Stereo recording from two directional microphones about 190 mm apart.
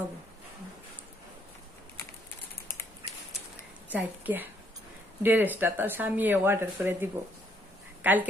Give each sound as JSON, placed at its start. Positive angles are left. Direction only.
{"t": 3.9, "sound": "speech", "side_deg": -10}